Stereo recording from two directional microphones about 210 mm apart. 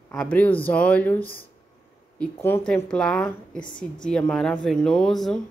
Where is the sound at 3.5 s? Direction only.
20° left (ahead or behind).